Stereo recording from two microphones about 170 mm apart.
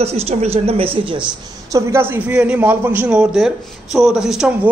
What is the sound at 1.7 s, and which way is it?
A man's voice, 15° right (ahead or behind).